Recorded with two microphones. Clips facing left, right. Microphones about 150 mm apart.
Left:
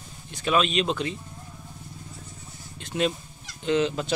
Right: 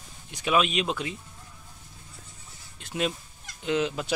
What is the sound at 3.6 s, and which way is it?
Speech, 5° right (ahead or behind).